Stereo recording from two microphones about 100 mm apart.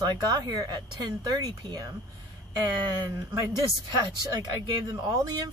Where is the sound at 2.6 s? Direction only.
25° right (ahead or behind).